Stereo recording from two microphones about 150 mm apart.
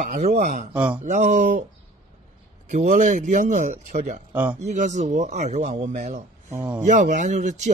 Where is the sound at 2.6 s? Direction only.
55° right (ahead or behind).